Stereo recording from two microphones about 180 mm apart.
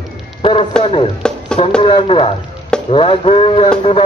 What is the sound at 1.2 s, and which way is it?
Music, 5° left (ahead or behind).